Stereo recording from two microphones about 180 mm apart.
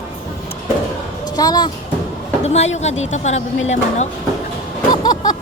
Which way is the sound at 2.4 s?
35° left (ahead or behind).